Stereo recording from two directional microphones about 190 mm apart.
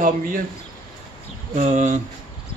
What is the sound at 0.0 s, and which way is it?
Speech, 45° right (ahead or behind).